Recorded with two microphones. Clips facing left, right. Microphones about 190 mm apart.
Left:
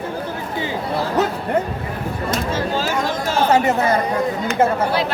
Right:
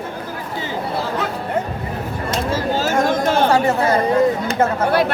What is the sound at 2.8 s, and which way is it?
Chatter, 50° right (ahead or behind).